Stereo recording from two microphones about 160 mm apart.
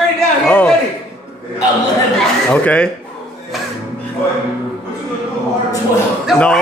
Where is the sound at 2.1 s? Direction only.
10° left (ahead or behind).